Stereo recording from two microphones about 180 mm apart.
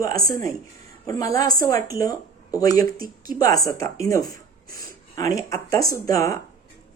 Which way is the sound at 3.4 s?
20° left (ahead or behind).